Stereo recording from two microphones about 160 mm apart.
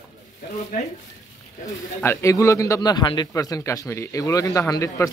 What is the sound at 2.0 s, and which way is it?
A man's voice, 20° left (ahead or behind).